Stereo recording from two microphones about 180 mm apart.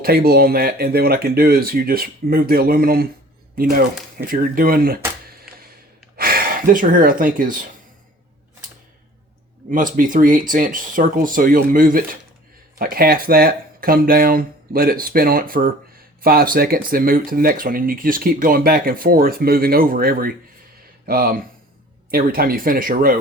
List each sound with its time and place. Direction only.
0.0 s speech: 55° right (ahead or behind)
6.1 s speech: 55° right (ahead or behind)
9.6 s speech: 50° right (ahead or behind)